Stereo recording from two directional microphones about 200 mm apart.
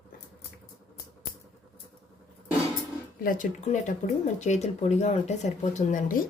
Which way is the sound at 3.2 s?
40° left (ahead or behind).